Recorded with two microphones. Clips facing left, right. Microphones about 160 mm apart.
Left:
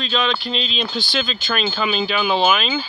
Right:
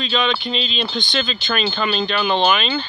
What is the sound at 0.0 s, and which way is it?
Speech, centre (ahead or behind).